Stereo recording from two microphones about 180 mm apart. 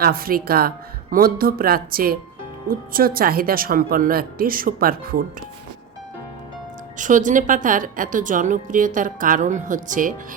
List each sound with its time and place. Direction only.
0.0 s a woman's voice: 55° right (ahead or behind)
6.9 s a woman's voice: 45° right (ahead or behind)